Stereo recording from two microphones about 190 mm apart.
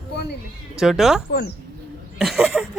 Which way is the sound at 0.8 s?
Centre (ahead or behind).